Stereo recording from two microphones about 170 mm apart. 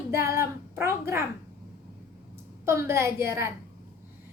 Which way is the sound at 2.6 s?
15° right (ahead or behind).